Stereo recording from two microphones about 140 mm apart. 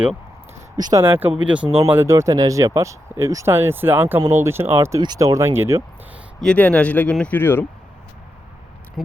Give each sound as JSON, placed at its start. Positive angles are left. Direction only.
{"t": 0.8, "sound": "speech", "side_deg": -30}
{"t": 1.0, "sound": "speech", "side_deg": -15}
{"t": 6.4, "sound": "speech", "side_deg": 10}